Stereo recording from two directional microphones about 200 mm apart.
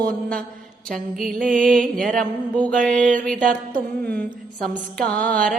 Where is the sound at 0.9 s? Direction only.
Centre (ahead or behind).